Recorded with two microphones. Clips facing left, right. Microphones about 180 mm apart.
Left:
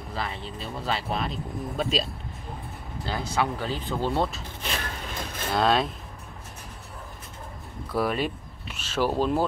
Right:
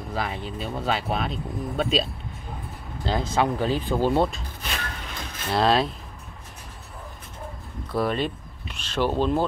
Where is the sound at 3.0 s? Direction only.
20° right (ahead or behind).